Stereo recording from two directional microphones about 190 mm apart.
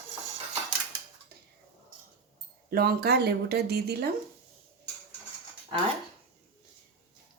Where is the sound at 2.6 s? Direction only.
55° right (ahead or behind).